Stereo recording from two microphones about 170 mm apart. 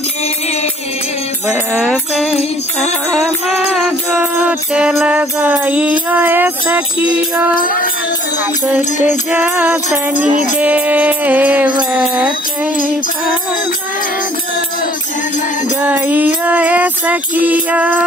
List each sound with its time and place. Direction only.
1.5 s music: centre (ahead or behind)
7.5 s music: 55° left (ahead or behind)
8.9 s music: 45° left (ahead or behind)
9.3 s mantra: 10° right (ahead or behind)
15.8 s music: 10° right (ahead or behind)